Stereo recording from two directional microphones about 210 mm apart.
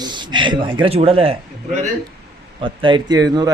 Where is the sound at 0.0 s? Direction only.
20° right (ahead or behind).